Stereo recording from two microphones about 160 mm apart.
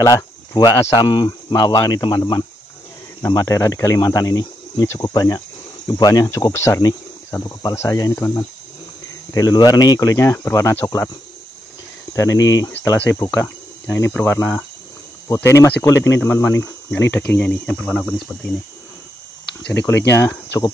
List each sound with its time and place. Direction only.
0.0 s speech: 20° left (ahead or behind)
12.1 s speech: 20° left (ahead or behind)
12.8 s speech: 10° left (ahead or behind)
19.7 s speech: 15° left (ahead or behind)